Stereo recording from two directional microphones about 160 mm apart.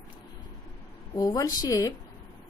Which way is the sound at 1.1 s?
25° left (ahead or behind).